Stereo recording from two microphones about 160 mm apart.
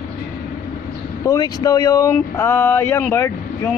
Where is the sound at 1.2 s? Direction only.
25° left (ahead or behind).